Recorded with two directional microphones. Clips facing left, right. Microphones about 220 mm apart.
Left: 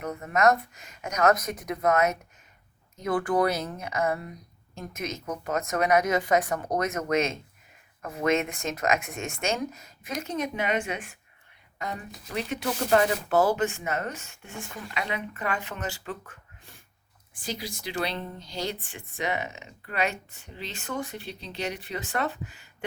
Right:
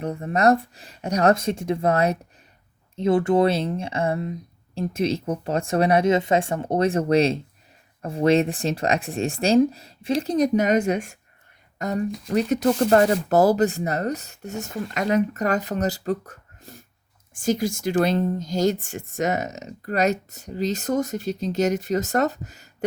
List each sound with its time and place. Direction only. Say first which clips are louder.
0.0 s speech: right 3 dB; 30° right (ahead or behind)